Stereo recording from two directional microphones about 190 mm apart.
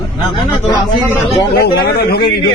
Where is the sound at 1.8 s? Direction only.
55° left (ahead or behind).